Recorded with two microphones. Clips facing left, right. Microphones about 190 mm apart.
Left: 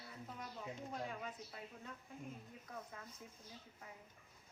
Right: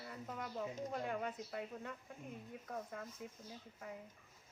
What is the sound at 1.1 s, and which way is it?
Speech, 60° right (ahead or behind).